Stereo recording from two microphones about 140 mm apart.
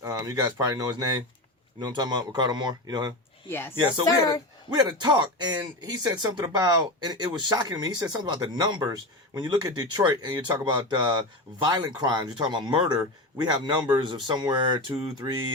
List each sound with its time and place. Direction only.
0.0 s a sound: 25° right (ahead or behind)
0.6 s speech: 30° right (ahead or behind)
4.7 s speech: 30° right (ahead or behind)